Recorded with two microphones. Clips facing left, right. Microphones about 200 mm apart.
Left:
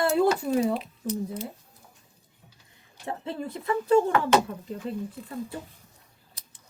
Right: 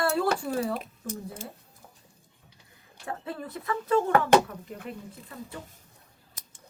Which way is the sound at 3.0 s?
25° left (ahead or behind).